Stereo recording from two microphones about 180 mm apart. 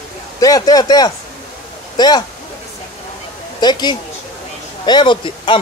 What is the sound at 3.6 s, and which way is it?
Speech, 25° left (ahead or behind).